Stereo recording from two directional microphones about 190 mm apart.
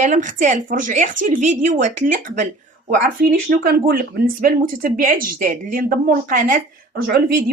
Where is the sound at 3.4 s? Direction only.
50° right (ahead or behind).